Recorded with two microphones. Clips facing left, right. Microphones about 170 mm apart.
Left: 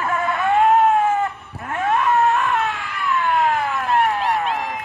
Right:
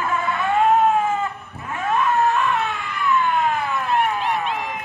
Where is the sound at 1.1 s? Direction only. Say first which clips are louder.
Left 3 dB; 65° left (ahead or behind).